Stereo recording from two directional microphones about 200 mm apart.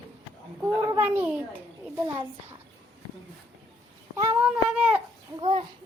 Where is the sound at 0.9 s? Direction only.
10° right (ahead or behind).